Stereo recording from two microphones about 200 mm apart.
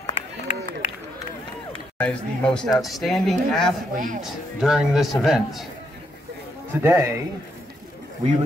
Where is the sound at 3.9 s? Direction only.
40° right (ahead or behind).